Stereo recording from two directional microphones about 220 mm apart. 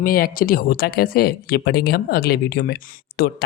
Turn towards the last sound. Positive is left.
turn(degrees=40)  # may be behind; listen again after turning